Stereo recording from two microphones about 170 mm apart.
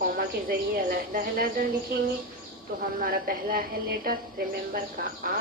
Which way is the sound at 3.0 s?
60° right (ahead or behind).